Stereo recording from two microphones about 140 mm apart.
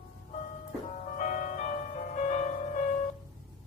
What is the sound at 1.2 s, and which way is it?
Music, 60° left (ahead or behind).